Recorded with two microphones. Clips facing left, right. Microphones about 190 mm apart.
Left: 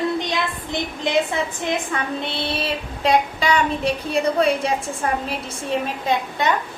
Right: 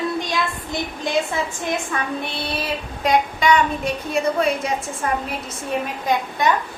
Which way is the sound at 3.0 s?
30° left (ahead or behind).